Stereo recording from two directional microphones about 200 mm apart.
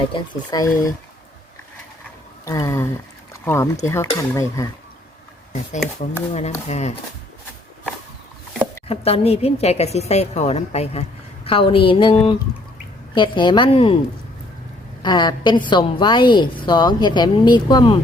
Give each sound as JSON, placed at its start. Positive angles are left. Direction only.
{"t": 0.1, "sound": "speech", "side_deg": 20}
{"t": 2.4, "sound": "speech", "side_deg": 15}
{"t": 6.0, "sound": "a woman's voice", "side_deg": 35}
{"t": 8.9, "sound": "a woman's voice", "side_deg": 30}
{"t": 15.0, "sound": "a woman's voice", "side_deg": 20}